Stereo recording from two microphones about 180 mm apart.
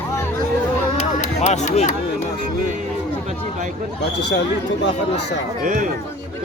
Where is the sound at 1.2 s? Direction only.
40° left (ahead or behind).